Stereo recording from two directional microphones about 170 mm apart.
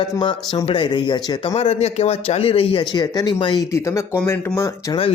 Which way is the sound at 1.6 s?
40° left (ahead or behind).